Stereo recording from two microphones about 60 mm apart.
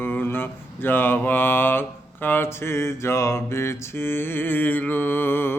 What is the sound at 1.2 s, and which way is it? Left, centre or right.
Mantra, left.